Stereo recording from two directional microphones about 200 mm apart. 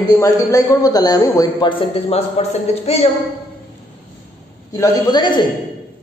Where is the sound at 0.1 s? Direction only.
15° left (ahead or behind); by 3.1 s 30° left (ahead or behind).